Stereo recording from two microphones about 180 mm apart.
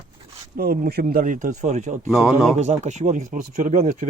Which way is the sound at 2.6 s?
40° right (ahead or behind).